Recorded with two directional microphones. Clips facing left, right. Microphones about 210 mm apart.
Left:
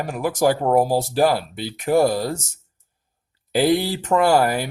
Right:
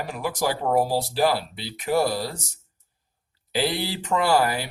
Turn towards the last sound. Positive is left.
turn(degrees=45)  # may be behind; listen again after turning